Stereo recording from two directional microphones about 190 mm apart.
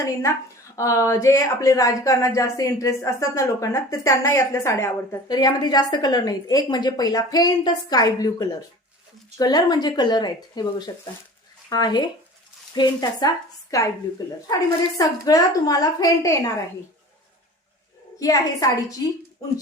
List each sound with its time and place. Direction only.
0.0 s a woman's voice: 15° left (ahead or behind)
18.2 s a woman's voice: 20° left (ahead or behind)